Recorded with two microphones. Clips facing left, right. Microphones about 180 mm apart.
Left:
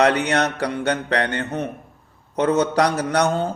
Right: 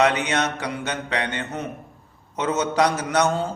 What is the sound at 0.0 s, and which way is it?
A man's voice, 60° left (ahead or behind).